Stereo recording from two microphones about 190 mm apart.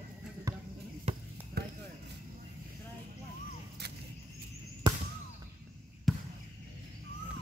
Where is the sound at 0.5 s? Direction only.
15° right (ahead or behind).